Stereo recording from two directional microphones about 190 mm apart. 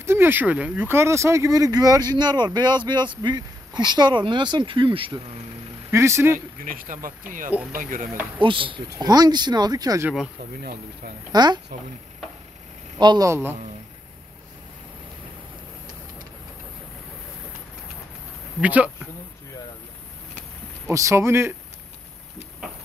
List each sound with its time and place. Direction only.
0.0 s speech: 10° right (ahead or behind)
5.9 s a man's voice: 15° right (ahead or behind)
6.6 s speech: 45° right (ahead or behind)
8.4 s speech: 25° right (ahead or behind)
11.3 s speech: 20° right (ahead or behind)
13.0 s a man's voice: 20° right (ahead or behind)
18.6 s a man's voice: 5° right (ahead or behind)
20.9 s a man's voice: 15° right (ahead or behind)